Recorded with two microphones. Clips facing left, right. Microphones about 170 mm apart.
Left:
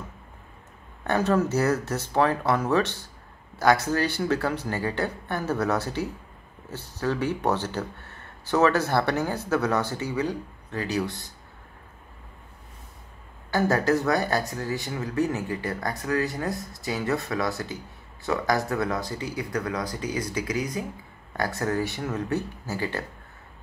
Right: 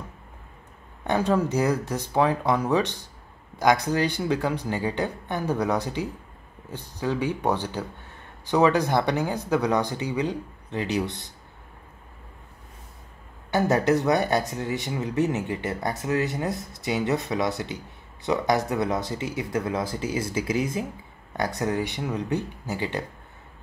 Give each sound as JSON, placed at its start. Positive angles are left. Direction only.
{"t": 1.0, "sound": "speech", "side_deg": -15}
{"t": 13.5, "sound": "speech", "side_deg": -20}
{"t": 16.5, "sound": "speech", "side_deg": 0}
{"t": 16.8, "sound": "speech", "side_deg": -20}